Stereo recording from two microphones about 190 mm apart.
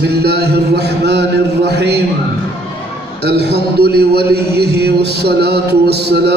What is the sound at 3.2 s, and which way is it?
Mantra, 60° right (ahead or behind).